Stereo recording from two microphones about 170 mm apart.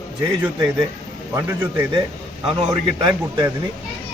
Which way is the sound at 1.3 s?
15° right (ahead or behind).